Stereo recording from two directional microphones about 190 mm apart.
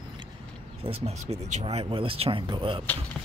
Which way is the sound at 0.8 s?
30° right (ahead or behind).